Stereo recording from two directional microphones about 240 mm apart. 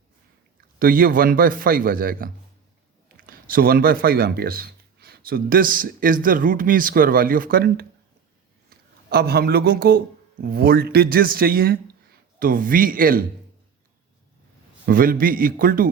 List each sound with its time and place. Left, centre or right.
0.8 s speech: right
14.8 s speech: right